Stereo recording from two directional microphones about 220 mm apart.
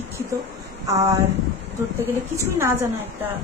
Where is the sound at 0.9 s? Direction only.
15° right (ahead or behind).